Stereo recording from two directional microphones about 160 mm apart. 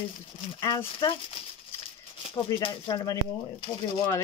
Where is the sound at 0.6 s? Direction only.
30° left (ahead or behind).